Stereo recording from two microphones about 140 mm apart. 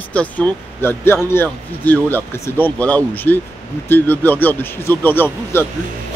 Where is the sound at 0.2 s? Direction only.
10° left (ahead or behind).